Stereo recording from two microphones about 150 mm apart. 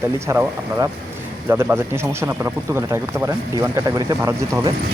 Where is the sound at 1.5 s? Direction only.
15° right (ahead or behind).